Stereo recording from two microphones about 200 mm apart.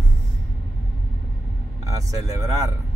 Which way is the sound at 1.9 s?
15° right (ahead or behind).